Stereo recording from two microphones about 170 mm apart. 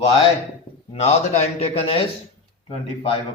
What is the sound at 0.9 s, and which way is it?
Speech, 40° left (ahead or behind).